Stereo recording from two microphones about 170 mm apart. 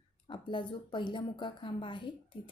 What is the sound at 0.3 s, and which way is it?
A woman's voice, 30° left (ahead or behind).